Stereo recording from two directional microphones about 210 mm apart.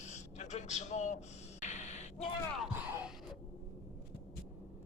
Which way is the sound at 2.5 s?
Centre (ahead or behind).